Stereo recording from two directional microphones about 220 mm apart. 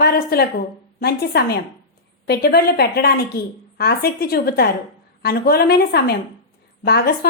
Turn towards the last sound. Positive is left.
turn(degrees=45)  # may be behind; listen again after turning